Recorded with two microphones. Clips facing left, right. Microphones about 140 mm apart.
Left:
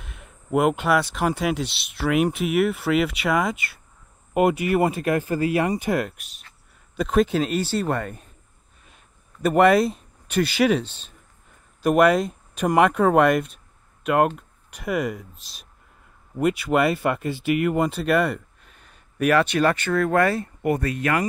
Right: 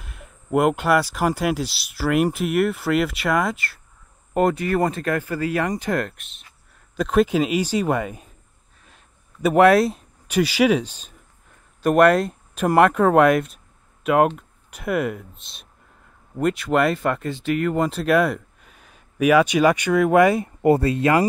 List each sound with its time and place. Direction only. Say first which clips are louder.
0.0 s speech: right 1 dB; centre (ahead or behind)
11.8 s speech: right 2 dB; centre (ahead or behind); by 20.4 s 15° right (ahead or behind)
20.6 s speech: right 6 dB; 25° right (ahead or behind)